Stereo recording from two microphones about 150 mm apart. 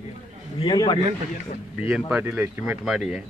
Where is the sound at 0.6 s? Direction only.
30° left (ahead or behind).